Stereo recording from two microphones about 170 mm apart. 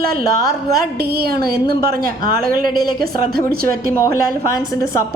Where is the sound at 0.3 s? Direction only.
20° left (ahead or behind).